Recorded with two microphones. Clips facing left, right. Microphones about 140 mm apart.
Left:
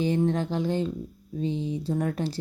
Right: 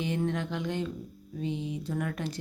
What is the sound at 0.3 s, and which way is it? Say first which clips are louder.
Speech: left 6 dB; 35° left (ahead or behind).